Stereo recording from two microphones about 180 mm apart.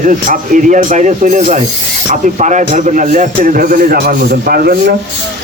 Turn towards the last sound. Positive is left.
turn(degrees=-55)  # may be behind; listen again after turning